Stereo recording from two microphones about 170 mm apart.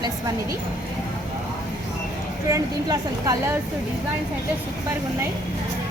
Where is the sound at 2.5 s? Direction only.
20° right (ahead or behind).